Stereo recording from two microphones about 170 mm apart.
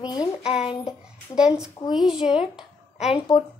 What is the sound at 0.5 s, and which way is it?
Speech, 35° left (ahead or behind).